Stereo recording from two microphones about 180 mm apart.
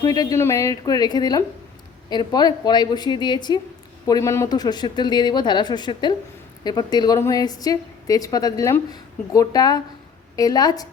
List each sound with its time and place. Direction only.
0.0 s a woman's voice: 20° left (ahead or behind)